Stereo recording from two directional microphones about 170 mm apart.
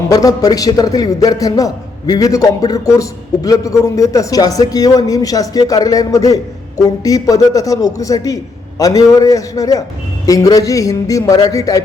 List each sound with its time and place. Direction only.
0.1 s a man's voice: 20° left (ahead or behind)